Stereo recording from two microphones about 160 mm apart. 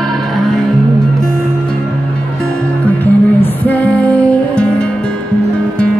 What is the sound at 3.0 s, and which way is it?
Music, 10° left (ahead or behind).